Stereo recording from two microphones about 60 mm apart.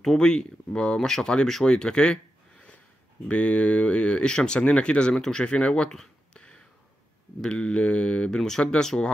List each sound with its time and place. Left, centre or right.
0.0 s speech: centre